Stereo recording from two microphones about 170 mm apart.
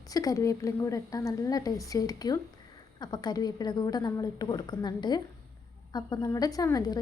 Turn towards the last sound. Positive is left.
turn(degrees=20)  # may be behind; listen again after turning